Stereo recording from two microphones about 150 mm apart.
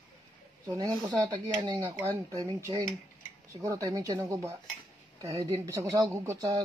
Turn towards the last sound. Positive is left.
turn(degrees=-20)  # may be behind; listen again after turning